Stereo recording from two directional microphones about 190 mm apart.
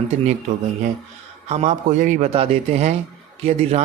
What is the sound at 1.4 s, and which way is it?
A man's voice, 35° right (ahead or behind).